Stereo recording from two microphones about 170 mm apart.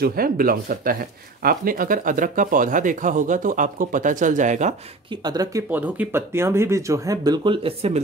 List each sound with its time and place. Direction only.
0.0 s speech: 60° right (ahead or behind); by 4.7 s 45° right (ahead or behind)
5.1 s speech: 25° right (ahead or behind)
5.7 s speech: 10° right (ahead or behind); by 8.0 s 35° right (ahead or behind)